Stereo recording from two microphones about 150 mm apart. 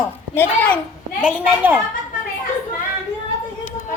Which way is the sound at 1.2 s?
10° right (ahead or behind).